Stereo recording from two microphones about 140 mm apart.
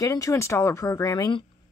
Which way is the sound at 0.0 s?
25° left (ahead or behind).